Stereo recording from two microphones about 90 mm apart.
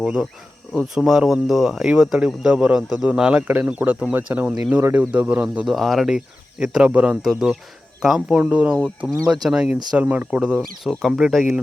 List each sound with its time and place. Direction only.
0.0 s speech: 5° right (ahead or behind)
5.6 s speech: centre (ahead or behind)
7.3 s speech: centre (ahead or behind)
8.4 s speech: 15° right (ahead or behind)
10.6 s speech: centre (ahead or behind)